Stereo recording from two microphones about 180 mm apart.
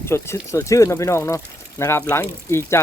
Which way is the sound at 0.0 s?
15° left (ahead or behind).